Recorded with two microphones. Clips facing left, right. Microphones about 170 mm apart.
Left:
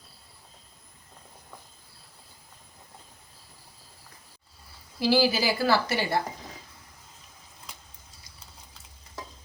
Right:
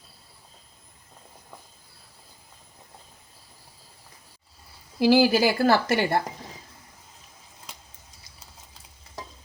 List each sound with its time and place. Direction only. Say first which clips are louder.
4.9 s a woman's voice: right 5 dB; 55° right (ahead or behind)